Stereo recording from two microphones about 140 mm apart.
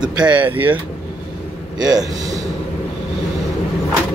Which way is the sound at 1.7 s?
30° right (ahead or behind).